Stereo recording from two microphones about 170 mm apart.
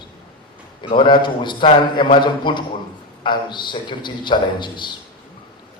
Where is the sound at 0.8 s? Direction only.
30° left (ahead or behind).